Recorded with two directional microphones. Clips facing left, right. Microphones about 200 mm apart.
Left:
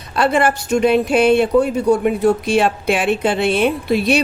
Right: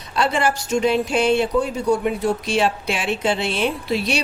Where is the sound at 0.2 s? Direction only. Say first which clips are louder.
Left 4 dB; 55° left (ahead or behind).